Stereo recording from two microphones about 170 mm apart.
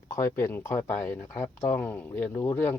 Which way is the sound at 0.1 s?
15° left (ahead or behind).